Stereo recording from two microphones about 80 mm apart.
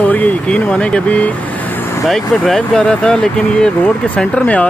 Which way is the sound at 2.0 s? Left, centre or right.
Centre.